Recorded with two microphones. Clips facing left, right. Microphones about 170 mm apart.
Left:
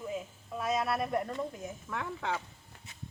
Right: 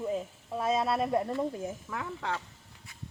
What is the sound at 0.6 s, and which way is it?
Speech, 25° right (ahead or behind).